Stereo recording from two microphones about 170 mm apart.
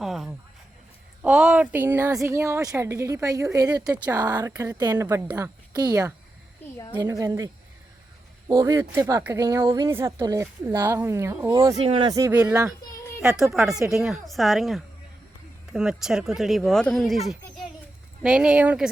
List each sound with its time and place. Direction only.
0.0 s a sound: centre (ahead or behind)
1.2 s a woman's voice: 5° right (ahead or behind)
3.9 s speech: 10° right (ahead or behind)
4.2 s a woman's voice: 20° right (ahead or behind)
8.5 s speech: 20° right (ahead or behind)
11.8 s speech: 35° right (ahead or behind)
12.2 s speech: 10° right (ahead or behind)
13.8 s speech: 15° right (ahead or behind)
14.1 s speech: centre (ahead or behind)